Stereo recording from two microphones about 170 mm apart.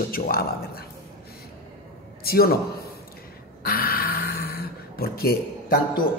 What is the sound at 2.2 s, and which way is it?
Speech, 65° left (ahead or behind).